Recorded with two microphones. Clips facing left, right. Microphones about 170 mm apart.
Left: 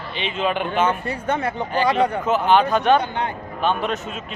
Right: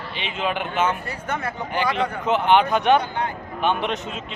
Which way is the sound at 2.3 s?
15° right (ahead or behind).